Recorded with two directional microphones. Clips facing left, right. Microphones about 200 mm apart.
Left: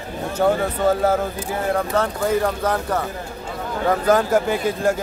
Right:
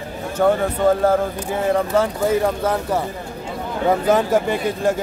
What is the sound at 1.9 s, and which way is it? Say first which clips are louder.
Speech: right 2 dB; 5° right (ahead or behind).